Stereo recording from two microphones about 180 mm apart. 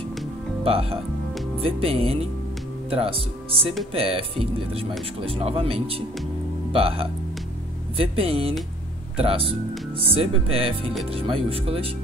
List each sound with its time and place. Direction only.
0.7 s speech: 30° right (ahead or behind)